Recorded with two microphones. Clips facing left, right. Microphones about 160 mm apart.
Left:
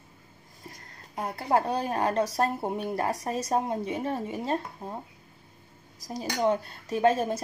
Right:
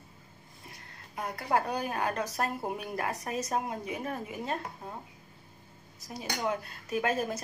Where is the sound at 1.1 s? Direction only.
30° left (ahead or behind).